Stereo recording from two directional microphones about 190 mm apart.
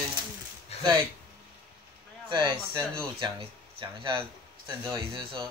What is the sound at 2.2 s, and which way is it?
Speech, 25° right (ahead or behind).